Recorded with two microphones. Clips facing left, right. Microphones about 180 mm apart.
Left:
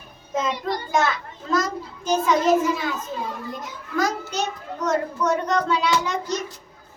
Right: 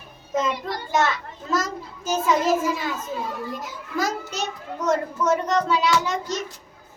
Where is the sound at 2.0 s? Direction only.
5° right (ahead or behind).